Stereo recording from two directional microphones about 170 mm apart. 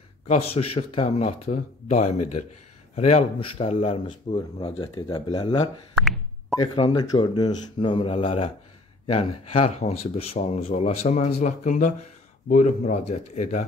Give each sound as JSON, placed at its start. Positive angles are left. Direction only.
{"t": 0.3, "sound": "a man's voice", "side_deg": 35}